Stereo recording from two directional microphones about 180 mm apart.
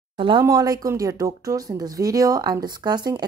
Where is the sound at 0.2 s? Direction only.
25° right (ahead or behind).